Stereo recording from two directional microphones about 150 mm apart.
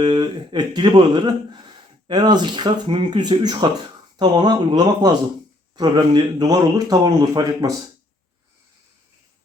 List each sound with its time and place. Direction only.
0.0 s speech: 30° right (ahead or behind)